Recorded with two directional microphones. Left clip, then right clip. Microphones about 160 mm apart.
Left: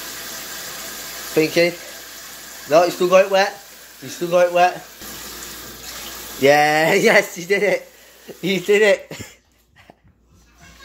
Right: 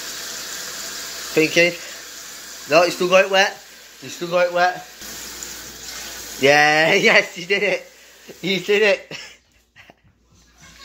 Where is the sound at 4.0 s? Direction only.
15° left (ahead or behind).